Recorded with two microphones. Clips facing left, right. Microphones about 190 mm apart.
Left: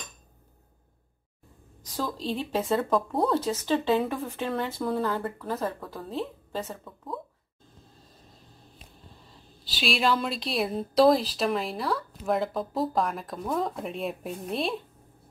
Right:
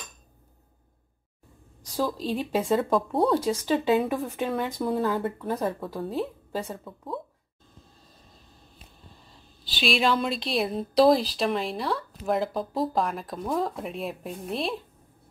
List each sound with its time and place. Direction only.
2.1 s speech: 10° right (ahead or behind)
3.3 s speech: 10° right (ahead or behind)
5.8 s speech: 5° right (ahead or behind)
9.7 s speech: 5° left (ahead or behind)